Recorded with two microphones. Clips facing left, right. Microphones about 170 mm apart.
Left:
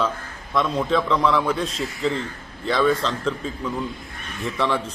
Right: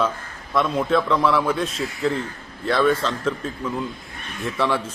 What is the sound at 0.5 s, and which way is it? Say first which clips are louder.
A man's voice: right 1 dB; centre (ahead or behind).